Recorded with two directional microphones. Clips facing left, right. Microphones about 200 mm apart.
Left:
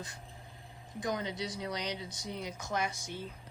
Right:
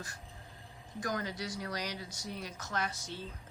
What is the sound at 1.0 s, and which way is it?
Speech, 20° left (ahead or behind).